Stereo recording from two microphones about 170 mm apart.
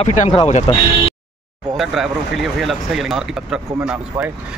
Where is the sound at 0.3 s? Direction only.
40° left (ahead or behind).